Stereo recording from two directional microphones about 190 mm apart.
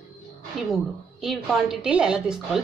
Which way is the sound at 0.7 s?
Centre (ahead or behind).